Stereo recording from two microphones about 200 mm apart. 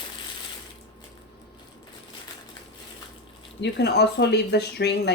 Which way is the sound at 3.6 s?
55° left (ahead or behind).